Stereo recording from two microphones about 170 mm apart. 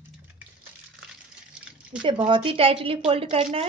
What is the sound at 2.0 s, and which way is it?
Speech, 30° right (ahead or behind).